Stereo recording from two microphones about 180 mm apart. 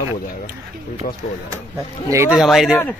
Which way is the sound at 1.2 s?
45° left (ahead or behind).